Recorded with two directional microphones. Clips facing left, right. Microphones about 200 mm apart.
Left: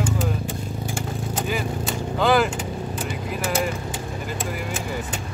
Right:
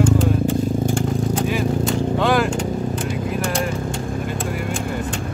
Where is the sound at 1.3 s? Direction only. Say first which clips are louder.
Right 1 dB; centre (ahead or behind).